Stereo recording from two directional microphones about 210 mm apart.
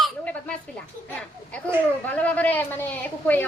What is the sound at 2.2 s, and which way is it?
Speech, 5° left (ahead or behind).